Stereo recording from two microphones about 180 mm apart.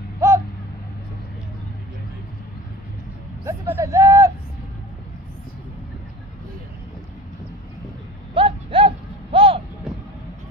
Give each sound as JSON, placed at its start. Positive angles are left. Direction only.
{"t": 0.2, "sound": "owl", "side_deg": -15}
{"t": 3.4, "sound": "speech", "side_deg": -15}
{"t": 8.4, "sound": "a sound", "side_deg": -30}